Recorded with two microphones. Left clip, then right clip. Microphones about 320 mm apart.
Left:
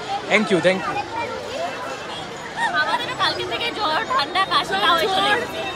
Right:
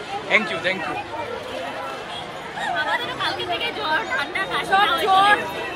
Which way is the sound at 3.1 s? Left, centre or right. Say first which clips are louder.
Left 2 dB; centre.